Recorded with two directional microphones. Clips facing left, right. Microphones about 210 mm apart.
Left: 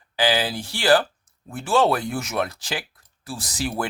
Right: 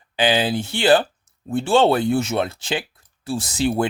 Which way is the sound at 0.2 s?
20° right (ahead or behind).